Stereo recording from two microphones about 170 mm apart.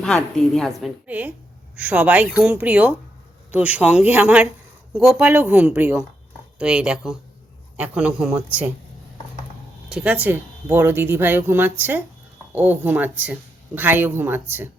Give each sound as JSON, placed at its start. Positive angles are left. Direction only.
{"t": 0.0, "sound": "a woman's voice", "side_deg": 5}
{"t": 9.9, "sound": "a woman's voice", "side_deg": -10}